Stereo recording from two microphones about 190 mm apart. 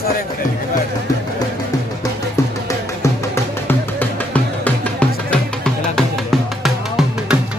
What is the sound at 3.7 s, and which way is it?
Music, 10° left (ahead or behind).